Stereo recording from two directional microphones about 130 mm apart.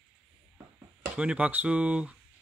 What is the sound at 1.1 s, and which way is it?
Speech, 10° right (ahead or behind).